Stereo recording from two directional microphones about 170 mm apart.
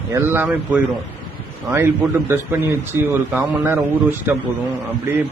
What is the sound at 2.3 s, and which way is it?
A man's voice, 15° right (ahead or behind).